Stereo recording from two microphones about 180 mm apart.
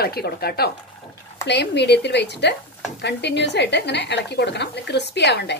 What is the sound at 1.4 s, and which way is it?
A woman's voice, 70° left (ahead or behind).